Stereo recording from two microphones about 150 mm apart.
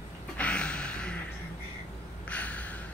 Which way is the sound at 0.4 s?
5° left (ahead or behind).